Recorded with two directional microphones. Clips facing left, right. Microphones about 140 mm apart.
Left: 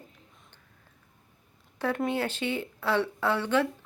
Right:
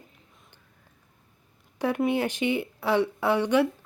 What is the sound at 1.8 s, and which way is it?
A woman's voice, 15° right (ahead or behind).